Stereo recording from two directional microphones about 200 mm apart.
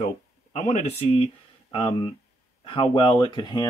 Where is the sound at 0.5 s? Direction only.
35° left (ahead or behind).